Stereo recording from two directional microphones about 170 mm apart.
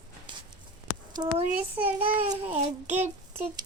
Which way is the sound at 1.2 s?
20° right (ahead or behind).